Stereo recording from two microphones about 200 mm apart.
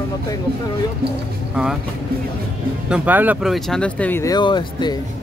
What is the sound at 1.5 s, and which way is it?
Speech, 5° right (ahead or behind).